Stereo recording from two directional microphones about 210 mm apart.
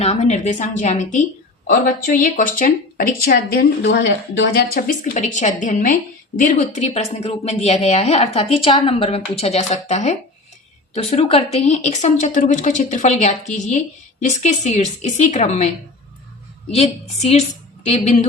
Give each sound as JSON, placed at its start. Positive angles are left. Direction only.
{"t": 0.0, "sound": "speech", "side_deg": 30}
{"t": 16.7, "sound": "speech", "side_deg": 30}